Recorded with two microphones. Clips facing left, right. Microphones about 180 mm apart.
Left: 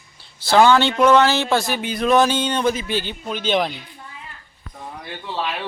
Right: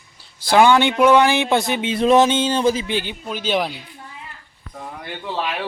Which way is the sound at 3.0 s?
10° right (ahead or behind).